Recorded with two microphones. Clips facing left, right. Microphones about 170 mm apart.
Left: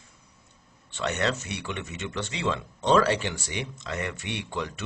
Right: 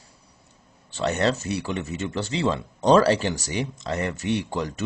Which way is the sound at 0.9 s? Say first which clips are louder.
Right 5 dB; 35° right (ahead or behind).